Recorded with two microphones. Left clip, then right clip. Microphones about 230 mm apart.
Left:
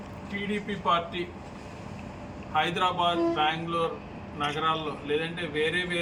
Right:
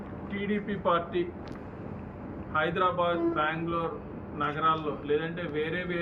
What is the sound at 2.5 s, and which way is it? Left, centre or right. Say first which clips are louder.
A man's voice: left 1 dB; left.